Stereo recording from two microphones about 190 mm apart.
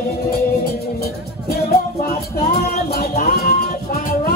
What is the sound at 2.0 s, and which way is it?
Music, 50° left (ahead or behind).